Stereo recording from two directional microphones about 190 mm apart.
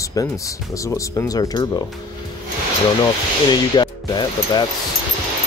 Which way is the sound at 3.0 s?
25° left (ahead or behind).